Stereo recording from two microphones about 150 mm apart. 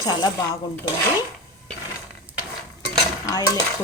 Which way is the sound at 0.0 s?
30° left (ahead or behind).